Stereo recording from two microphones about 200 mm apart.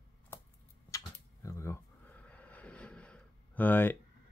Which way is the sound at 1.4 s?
15° left (ahead or behind).